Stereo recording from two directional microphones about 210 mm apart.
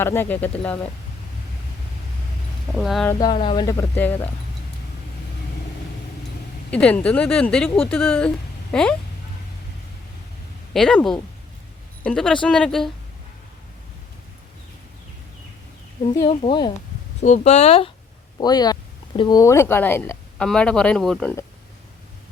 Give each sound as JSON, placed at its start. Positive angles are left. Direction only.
{"t": 0.0, "sound": "speech", "side_deg": 10}
{"t": 2.7, "sound": "speech", "side_deg": 0}
{"t": 3.1, "sound": "speech", "side_deg": 20}
{"t": 6.7, "sound": "speech", "side_deg": 5}
{"t": 10.8, "sound": "speech", "side_deg": 5}
{"t": 16.1, "sound": "speech", "side_deg": 25}
{"t": 17.2, "sound": "speech", "side_deg": 35}